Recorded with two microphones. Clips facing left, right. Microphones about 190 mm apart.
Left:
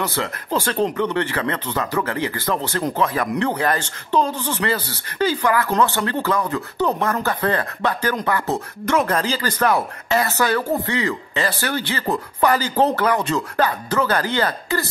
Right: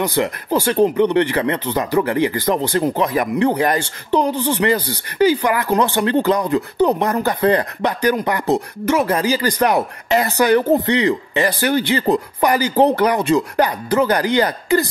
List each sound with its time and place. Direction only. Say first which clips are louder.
0.0 s speech: right 6 dB; 15° right (ahead or behind)